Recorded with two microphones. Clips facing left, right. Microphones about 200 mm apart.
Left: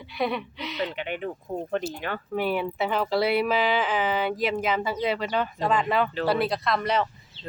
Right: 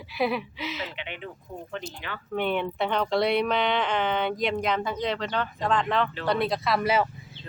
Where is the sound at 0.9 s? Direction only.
45° left (ahead or behind).